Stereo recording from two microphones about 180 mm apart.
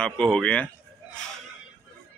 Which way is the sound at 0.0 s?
5° left (ahead or behind).